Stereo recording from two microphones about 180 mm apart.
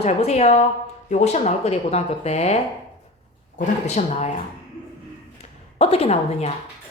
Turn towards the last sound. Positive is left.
turn(degrees=35)  # may be behind; listen again after turning